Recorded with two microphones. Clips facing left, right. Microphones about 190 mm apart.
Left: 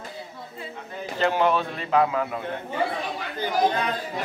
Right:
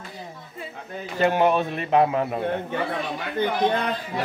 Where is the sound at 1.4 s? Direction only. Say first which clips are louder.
Right 2 dB; 15° right (ahead or behind).